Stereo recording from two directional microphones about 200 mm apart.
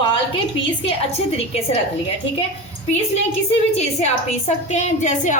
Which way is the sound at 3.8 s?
35° left (ahead or behind).